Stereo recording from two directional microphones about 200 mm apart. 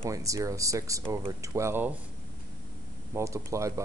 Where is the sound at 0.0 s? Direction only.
15° right (ahead or behind).